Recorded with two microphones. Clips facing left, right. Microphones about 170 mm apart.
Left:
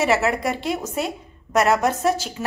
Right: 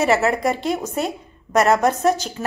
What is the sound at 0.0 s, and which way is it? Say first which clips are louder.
A woman's voice: right 2 dB; centre (ahead or behind).